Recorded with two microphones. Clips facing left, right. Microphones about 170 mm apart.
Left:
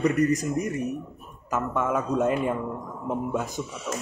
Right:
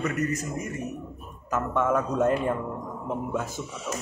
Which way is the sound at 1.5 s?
10° left (ahead or behind).